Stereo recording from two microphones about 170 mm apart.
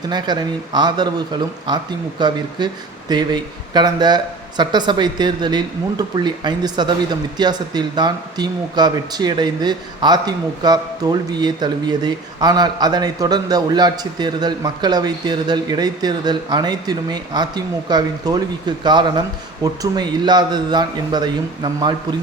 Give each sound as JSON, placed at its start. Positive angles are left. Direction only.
{"t": 0.1, "sound": "speech", "side_deg": -25}